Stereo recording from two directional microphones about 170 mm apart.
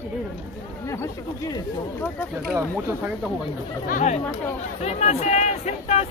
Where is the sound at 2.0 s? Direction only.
10° left (ahead or behind).